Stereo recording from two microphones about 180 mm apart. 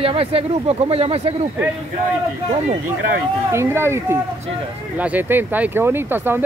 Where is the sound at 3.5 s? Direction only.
15° right (ahead or behind).